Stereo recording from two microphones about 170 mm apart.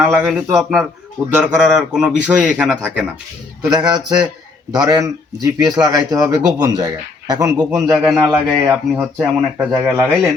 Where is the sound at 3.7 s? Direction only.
25° right (ahead or behind).